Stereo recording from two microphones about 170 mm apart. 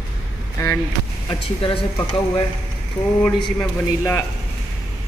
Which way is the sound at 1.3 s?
30° left (ahead or behind).